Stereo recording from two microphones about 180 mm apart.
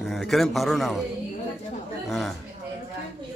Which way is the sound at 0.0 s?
Centre (ahead or behind).